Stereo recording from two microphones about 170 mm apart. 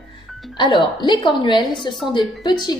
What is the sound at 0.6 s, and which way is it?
A woman's voice, 25° left (ahead or behind).